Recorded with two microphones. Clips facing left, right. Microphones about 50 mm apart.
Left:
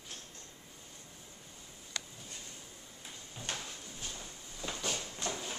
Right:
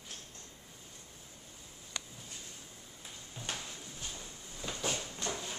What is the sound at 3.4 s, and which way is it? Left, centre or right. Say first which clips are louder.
Drawer open or close: even; centre.